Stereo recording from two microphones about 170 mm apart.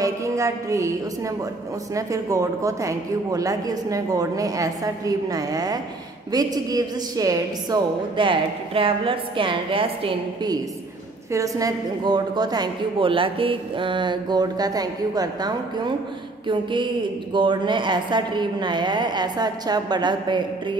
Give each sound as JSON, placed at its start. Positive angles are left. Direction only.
{"t": 0.0, "sound": "a woman's voice", "side_deg": -20}